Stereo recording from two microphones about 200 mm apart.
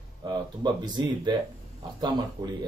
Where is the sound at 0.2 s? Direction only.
20° right (ahead or behind).